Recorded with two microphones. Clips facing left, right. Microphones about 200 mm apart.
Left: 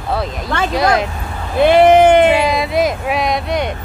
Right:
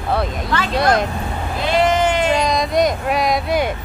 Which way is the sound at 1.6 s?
60° left (ahead or behind).